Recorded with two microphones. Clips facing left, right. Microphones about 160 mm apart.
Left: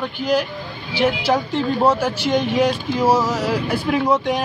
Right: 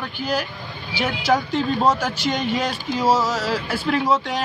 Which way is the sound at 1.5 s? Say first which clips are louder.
Left 2 dB; 10° left (ahead or behind).